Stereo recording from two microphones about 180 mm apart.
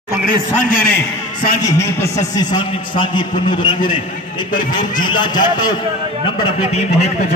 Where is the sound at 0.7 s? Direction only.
55° left (ahead or behind).